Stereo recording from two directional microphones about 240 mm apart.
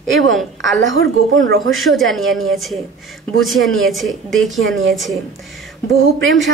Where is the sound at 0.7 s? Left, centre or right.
Right.